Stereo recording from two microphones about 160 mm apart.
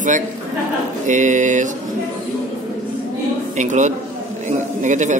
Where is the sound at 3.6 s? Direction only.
50° right (ahead or behind).